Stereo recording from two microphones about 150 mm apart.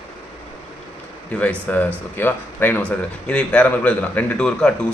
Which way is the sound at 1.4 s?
10° left (ahead or behind).